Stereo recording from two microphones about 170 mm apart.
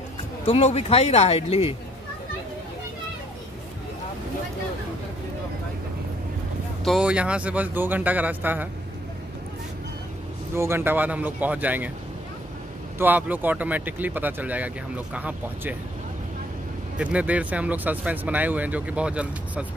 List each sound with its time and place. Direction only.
0.5 s speech: 40° left (ahead or behind)
6.8 s speech: 5° right (ahead or behind)
10.5 s speech: 15° right (ahead or behind)
13.0 s speech: 10° right (ahead or behind)
17.0 s speech: 10° right (ahead or behind)